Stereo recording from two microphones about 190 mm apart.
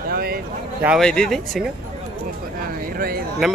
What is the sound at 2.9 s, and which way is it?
Speech, 50° right (ahead or behind).